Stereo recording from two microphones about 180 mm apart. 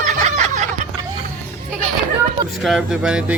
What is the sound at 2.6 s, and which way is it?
Speech, centre (ahead or behind).